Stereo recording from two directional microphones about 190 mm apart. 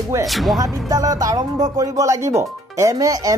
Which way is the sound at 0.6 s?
20° right (ahead or behind).